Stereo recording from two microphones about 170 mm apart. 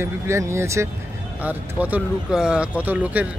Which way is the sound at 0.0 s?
15° right (ahead or behind).